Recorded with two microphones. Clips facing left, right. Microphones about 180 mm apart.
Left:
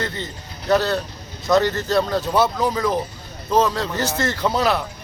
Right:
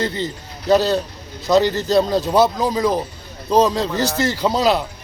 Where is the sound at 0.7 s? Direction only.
15° right (ahead or behind).